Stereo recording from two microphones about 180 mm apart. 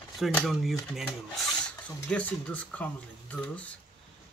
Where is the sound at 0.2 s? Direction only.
Centre (ahead or behind).